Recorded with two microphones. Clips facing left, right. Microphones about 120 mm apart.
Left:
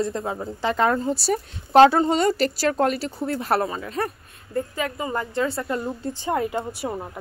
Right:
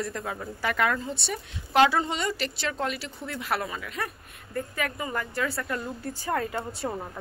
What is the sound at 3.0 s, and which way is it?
A woman's voice, 30° left (ahead or behind).